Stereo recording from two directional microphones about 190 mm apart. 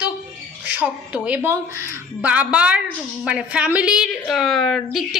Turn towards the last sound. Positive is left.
turn(degrees=0)  # may be behind; listen again after turning